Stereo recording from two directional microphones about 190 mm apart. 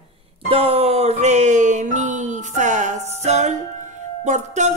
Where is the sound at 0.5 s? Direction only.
30° right (ahead or behind).